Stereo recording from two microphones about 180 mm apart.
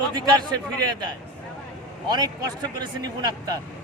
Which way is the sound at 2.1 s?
25° right (ahead or behind).